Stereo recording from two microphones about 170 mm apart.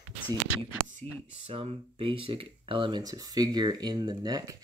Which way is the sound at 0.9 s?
40° right (ahead or behind).